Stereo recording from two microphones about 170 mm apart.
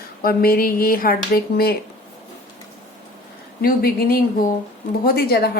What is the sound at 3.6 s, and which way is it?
Speech, 60° left (ahead or behind).